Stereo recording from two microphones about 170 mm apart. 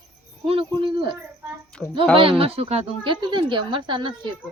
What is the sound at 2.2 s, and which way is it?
Speech, 30° right (ahead or behind).